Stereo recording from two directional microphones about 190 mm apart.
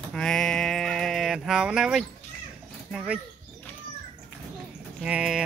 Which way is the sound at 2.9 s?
5° right (ahead or behind).